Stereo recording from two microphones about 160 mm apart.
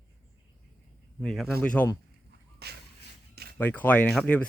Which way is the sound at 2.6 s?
90° right.